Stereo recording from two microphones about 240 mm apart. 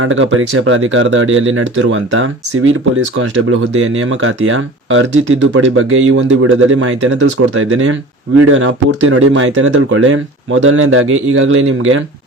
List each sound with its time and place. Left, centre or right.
0.0 s speech: right
3.8 s speech: right